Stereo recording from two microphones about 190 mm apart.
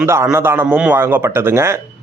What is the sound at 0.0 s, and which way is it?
A man's voice, 10° right (ahead or behind).